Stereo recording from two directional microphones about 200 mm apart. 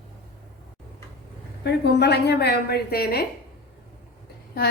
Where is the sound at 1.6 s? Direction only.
55° left (ahead or behind).